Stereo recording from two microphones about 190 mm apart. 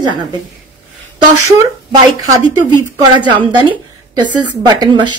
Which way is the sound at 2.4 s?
20° right (ahead or behind).